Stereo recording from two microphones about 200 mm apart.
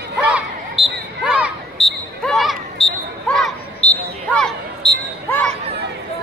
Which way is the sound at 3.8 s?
30° left (ahead or behind).